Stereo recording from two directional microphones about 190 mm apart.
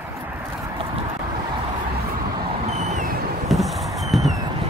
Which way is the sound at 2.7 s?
40° right (ahead or behind).